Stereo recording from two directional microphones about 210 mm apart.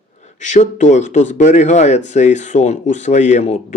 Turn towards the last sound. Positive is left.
turn(degrees=35)  # may be behind; listen again after turning